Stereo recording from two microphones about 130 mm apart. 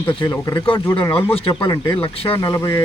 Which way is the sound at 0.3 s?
30° left (ahead or behind).